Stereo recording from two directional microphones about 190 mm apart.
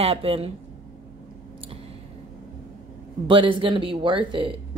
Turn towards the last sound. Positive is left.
turn(degrees=-25)  # may be behind; listen again after turning